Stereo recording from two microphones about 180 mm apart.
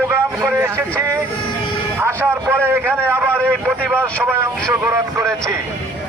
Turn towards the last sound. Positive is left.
turn(degrees=-15)  # may be behind; listen again after turning